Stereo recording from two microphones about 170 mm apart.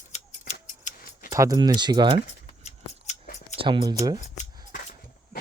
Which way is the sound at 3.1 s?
45° left (ahead or behind).